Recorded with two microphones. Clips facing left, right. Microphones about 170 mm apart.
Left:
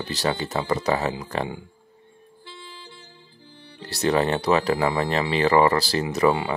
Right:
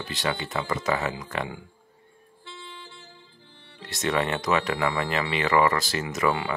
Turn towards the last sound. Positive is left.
turn(degrees=35)  # may be behind; listen again after turning